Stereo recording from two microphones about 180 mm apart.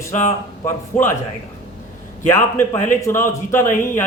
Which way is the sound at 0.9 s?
50° left (ahead or behind).